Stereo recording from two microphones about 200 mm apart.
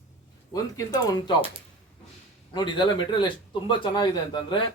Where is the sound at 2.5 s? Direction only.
25° left (ahead or behind).